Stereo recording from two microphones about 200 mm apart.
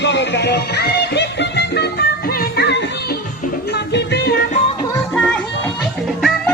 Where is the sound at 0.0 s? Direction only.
60° left (ahead or behind).